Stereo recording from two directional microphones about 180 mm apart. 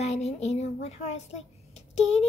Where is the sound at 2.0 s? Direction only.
35° left (ahead or behind).